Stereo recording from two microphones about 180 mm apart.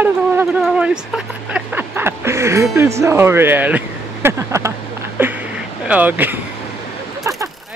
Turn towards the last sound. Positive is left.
turn(degrees=-20)  # may be behind; listen again after turning